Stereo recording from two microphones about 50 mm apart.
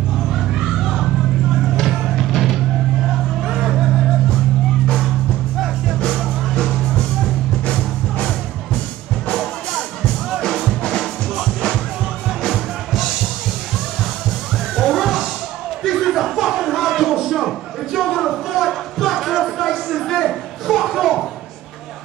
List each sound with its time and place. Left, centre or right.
0.3 s a sound: centre
1.6 s music: centre
3.3 s a sound: centre
6.0 s music: centre
7.6 s music: centre
9.3 s music: centre
10.8 s music: centre
12.4 s music: centre
14.8 s music: centre
15.8 s a sound: centre